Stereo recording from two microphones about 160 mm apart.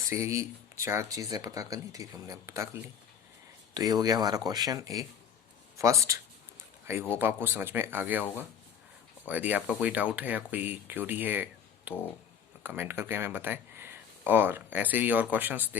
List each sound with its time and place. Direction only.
0.1 s speech: 20° right (ahead or behind)
3.8 s speech: 25° right (ahead or behind)
9.2 s speech: 10° right (ahead or behind)